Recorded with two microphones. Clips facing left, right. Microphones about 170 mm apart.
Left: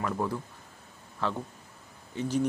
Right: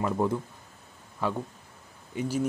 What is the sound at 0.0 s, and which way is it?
Speech, 20° right (ahead or behind).